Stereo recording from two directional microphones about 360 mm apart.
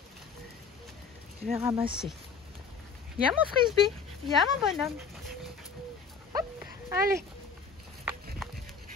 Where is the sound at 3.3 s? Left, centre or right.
Centre.